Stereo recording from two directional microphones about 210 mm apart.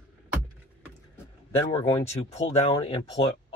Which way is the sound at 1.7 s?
30° left (ahead or behind).